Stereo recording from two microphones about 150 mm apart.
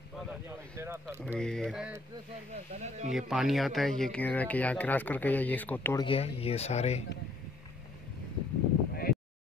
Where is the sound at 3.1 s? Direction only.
Centre (ahead or behind).